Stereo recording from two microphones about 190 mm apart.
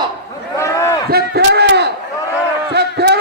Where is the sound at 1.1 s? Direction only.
55° right (ahead or behind).